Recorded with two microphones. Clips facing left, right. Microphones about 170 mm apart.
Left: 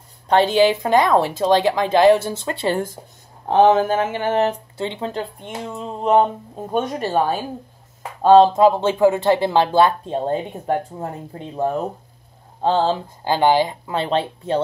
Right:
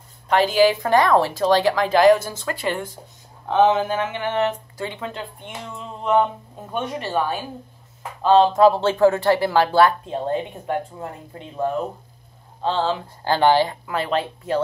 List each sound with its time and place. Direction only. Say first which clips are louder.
0.3 s speech: left 2 dB; 30° left (ahead or behind)
8.5 s speech: even; 15° left (ahead or behind); by 13.0 s 35° left (ahead or behind)
13.2 s speech: even; 15° left (ahead or behind)